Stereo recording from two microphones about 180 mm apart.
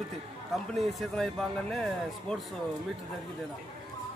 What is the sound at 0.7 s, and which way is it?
A man's voice, centre (ahead or behind).